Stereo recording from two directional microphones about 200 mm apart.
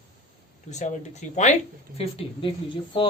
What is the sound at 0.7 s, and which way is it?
Speech, 35° left (ahead or behind).